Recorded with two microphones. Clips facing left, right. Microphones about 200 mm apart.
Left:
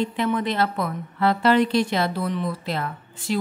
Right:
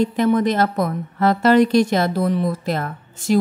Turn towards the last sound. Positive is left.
turn(degrees=-45)  # may be behind; listen again after turning